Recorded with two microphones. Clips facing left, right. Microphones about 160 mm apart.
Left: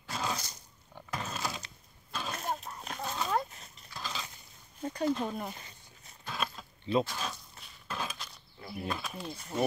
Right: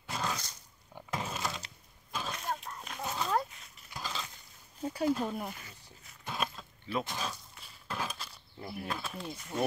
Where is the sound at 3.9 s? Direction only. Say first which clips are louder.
Right 1 dB; 15° right (ahead or behind).